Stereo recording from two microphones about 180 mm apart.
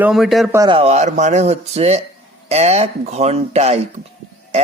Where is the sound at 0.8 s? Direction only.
40° right (ahead or behind).